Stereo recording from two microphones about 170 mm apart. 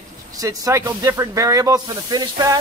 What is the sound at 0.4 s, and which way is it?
Speech, 20° right (ahead or behind).